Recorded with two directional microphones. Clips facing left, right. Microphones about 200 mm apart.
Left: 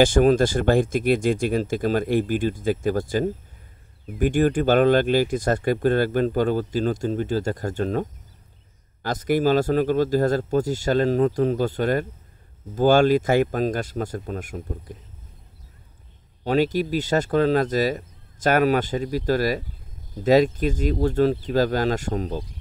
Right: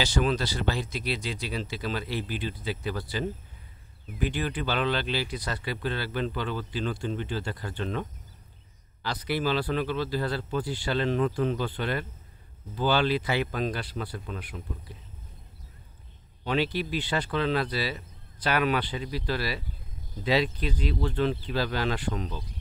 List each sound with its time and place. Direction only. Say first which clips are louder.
0.0 s speech: left 11 dB; 50° left (ahead or behind)
16.4 s speech: left 7 dB; 45° left (ahead or behind)